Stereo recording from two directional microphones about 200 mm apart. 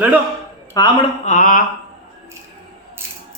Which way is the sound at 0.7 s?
20° left (ahead or behind).